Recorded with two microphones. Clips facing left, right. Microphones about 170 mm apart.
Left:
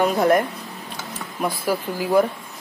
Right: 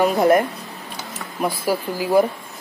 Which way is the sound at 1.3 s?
Centre (ahead or behind).